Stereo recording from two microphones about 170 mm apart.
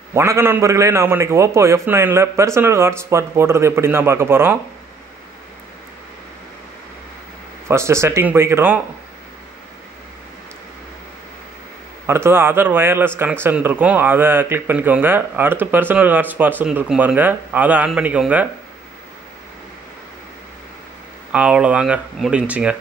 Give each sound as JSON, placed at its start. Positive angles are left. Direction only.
{"t": 0.1, "sound": "speech", "side_deg": -15}
{"t": 7.6, "sound": "speech", "side_deg": -15}
{"t": 12.1, "sound": "speech", "side_deg": -15}
{"t": 21.3, "sound": "speech", "side_deg": -5}